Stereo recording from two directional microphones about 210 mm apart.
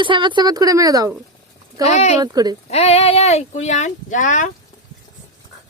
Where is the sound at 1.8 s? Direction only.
30° left (ahead or behind).